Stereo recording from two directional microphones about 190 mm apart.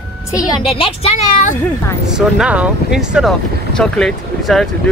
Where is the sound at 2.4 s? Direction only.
5° right (ahead or behind).